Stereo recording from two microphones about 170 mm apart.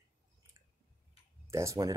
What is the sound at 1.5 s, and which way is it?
Speech, 20° right (ahead or behind).